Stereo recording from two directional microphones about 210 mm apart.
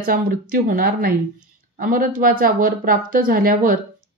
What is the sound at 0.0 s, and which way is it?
A woman's voice, 40° right (ahead or behind).